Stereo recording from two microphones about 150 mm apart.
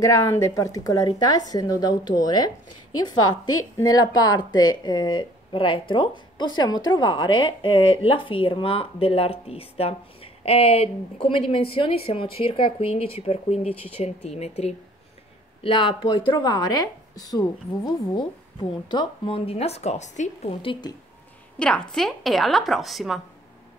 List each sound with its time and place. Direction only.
0.0 s a woman's voice: 20° left (ahead or behind); by 20.5 s 50° left (ahead or behind)
20.6 s a woman's voice: 35° left (ahead or behind)
21.5 s a woman's voice: 5° left (ahead or behind)